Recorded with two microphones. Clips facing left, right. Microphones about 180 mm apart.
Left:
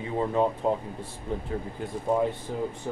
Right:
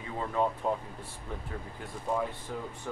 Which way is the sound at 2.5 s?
30° left (ahead or behind).